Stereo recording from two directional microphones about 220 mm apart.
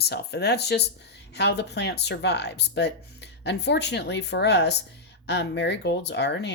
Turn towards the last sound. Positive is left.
turn(degrees=50)  # may be behind; listen again after turning